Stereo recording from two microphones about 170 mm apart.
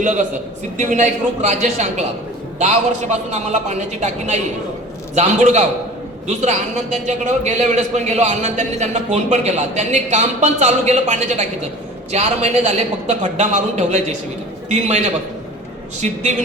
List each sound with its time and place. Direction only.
0.0 s a man's voice: 45° right (ahead or behind)